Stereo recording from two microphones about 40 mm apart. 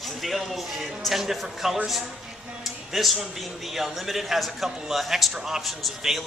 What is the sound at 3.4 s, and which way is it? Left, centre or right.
A man's voice, centre.